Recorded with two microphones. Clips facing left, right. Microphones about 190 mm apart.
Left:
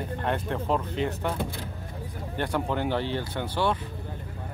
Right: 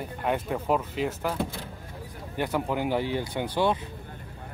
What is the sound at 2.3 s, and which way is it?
Speech, 5° right (ahead or behind).